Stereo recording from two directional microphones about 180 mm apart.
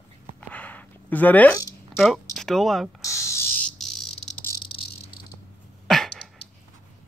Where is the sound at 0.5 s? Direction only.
10° left (ahead or behind).